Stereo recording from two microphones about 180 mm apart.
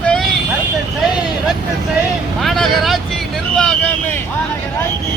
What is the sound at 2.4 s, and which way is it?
Vehicle, centre (ahead or behind).